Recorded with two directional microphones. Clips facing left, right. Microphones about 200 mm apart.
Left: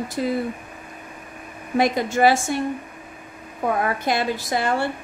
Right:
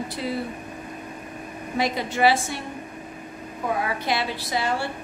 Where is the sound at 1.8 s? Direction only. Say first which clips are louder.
Left 4 dB; 45° left (ahead or behind).